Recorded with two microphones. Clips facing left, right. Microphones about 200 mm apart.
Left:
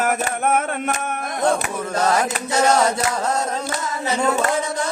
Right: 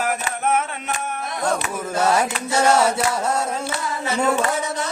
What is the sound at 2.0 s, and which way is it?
Mantra, 10° right (ahead or behind).